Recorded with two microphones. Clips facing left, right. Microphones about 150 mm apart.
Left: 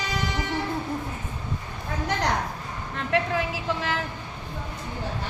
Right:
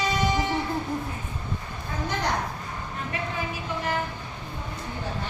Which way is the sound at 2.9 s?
90° left.